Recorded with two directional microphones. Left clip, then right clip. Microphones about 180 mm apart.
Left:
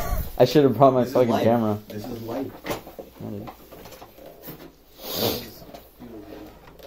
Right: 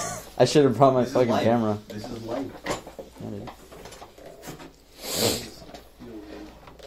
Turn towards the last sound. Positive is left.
turn(degrees=-10)  # may be behind; listen again after turning